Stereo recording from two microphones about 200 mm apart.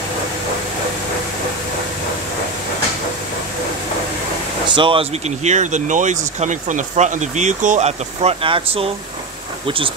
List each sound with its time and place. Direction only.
4.6 s speech: 25° right (ahead or behind)